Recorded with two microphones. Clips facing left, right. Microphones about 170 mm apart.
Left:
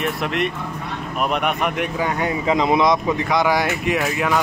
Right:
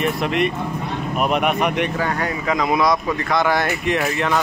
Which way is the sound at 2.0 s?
20° left (ahead or behind).